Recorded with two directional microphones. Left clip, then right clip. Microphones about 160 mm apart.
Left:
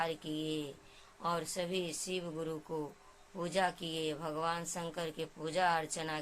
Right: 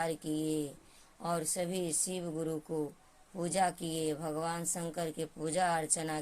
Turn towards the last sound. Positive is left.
turn(degrees=-45)  # may be behind; listen again after turning